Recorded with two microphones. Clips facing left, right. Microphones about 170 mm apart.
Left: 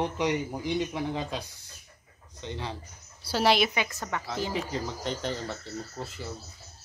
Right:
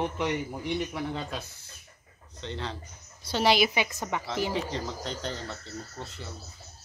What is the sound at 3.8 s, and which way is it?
Speech, 20° right (ahead or behind).